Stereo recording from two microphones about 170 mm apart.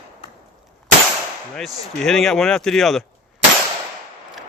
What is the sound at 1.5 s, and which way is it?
Speech, centre (ahead or behind).